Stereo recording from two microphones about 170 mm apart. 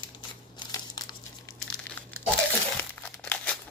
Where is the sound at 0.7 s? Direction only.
25° left (ahead or behind).